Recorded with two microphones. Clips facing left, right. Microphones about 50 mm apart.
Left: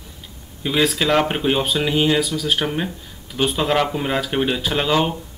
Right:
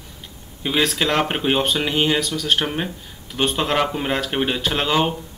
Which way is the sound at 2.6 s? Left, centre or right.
Centre.